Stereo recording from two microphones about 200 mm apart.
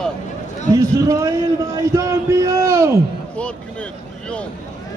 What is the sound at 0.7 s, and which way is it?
A man's voice, 15° right (ahead or behind).